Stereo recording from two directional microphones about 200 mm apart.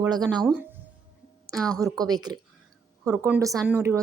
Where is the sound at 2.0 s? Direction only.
20° right (ahead or behind).